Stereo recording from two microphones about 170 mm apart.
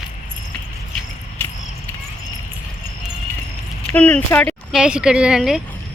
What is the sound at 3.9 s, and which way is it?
Speech, 10° left (ahead or behind).